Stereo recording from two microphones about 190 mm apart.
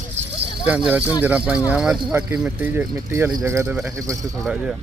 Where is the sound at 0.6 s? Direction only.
10° right (ahead or behind).